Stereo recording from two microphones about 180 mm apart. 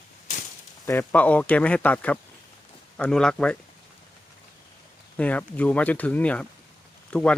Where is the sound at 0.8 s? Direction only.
15° left (ahead or behind).